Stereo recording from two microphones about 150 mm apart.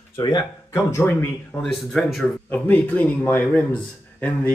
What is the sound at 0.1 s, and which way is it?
Speech, 30° left (ahead or behind).